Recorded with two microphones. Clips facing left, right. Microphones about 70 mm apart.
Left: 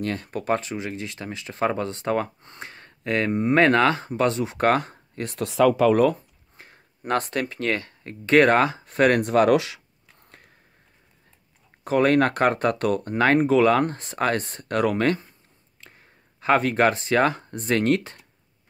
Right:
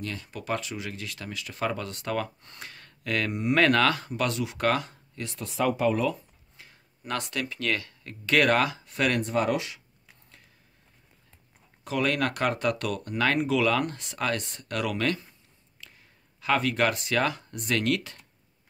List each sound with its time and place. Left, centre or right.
0.0 s speech: left
5.3 s speech: left
5.9 s speech: left
9.2 s speech: left
11.8 s speech: left
15.8 s a sound: left
16.3 s speech: left